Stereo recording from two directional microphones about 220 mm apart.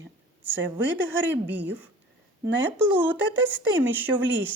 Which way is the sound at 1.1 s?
10° right (ahead or behind).